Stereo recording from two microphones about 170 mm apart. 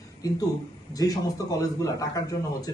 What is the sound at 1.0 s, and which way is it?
A man's voice, 20° left (ahead or behind).